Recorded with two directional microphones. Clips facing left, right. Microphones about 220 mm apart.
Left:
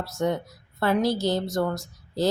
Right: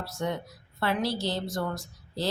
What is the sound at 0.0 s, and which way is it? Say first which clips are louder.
A woman's voice: left 6 dB; 45° left (ahead or behind).